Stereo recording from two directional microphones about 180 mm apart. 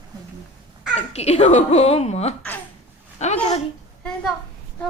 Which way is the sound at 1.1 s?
35° left (ahead or behind).